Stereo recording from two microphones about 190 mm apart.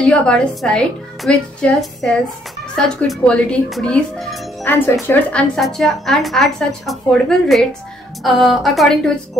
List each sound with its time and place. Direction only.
0.0 s a woman's voice: 5° left (ahead or behind)